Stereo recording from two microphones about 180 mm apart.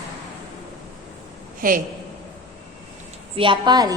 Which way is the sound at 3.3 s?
30° right (ahead or behind).